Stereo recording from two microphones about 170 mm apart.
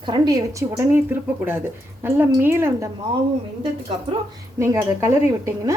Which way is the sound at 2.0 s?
10° right (ahead or behind).